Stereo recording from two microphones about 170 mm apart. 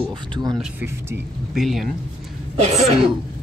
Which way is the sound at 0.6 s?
10° right (ahead or behind).